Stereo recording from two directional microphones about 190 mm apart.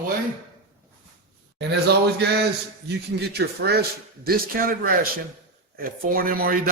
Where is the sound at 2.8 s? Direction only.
60° right (ahead or behind).